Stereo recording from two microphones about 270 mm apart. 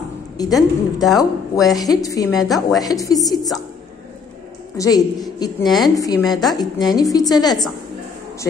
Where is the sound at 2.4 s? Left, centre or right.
Centre.